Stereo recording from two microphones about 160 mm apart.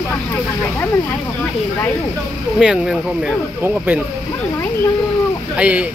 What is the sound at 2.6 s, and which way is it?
Speech, 5° right (ahead or behind).